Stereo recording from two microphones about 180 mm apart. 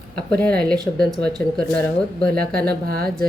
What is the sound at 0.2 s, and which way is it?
Speech, 5° left (ahead or behind).